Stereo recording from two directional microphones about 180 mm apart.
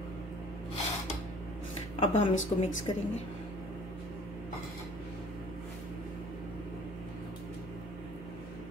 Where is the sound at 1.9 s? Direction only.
30° left (ahead or behind).